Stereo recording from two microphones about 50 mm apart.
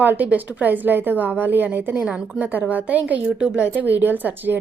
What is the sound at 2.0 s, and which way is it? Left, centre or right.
Speech, right.